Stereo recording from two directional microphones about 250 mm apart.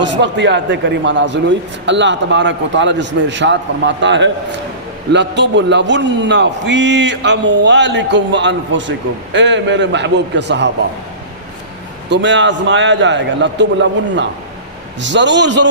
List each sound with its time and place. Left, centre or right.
0.0 s a man's voice: right
12.1 s a man's voice: right
15.0 s a man's voice: right